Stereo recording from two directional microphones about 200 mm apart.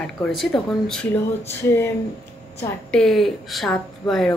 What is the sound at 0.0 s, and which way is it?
A woman's voice, 5° left (ahead or behind).